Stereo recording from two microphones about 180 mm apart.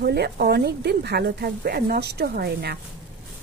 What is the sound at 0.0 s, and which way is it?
Speech, 65° right (ahead or behind).